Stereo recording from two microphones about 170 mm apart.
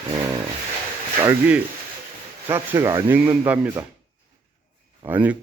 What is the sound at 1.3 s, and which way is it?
Speech, 10° right (ahead or behind).